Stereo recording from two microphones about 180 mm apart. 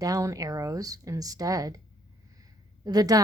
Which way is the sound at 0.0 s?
20° right (ahead or behind).